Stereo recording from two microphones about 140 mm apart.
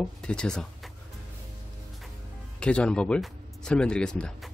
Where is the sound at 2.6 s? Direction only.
5° left (ahead or behind).